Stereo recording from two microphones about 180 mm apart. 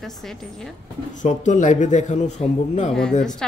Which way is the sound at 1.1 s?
45° left (ahead or behind).